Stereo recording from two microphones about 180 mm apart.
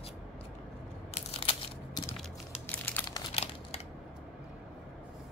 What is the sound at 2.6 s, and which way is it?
Crumpling, 10° left (ahead or behind).